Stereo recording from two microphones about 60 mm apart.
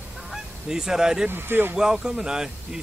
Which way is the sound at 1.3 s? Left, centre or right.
Right.